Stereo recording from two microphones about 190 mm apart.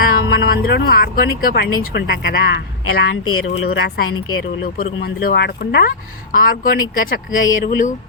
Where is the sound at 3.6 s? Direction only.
55° left (ahead or behind).